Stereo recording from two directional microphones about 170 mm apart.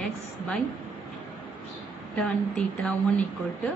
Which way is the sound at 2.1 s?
Centre (ahead or behind).